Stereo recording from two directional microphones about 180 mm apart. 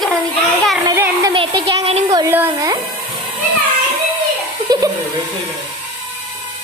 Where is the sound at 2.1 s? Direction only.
15° right (ahead or behind).